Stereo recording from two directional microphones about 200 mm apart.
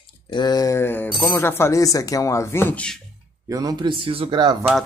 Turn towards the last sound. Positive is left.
turn(degrees=0)  # may be behind; listen again after turning